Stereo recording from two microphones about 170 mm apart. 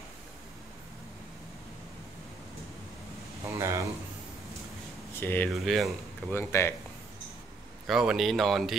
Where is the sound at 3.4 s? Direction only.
15° right (ahead or behind).